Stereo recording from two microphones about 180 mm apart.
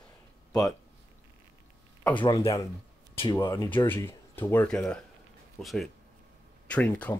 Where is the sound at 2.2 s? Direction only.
25° left (ahead or behind).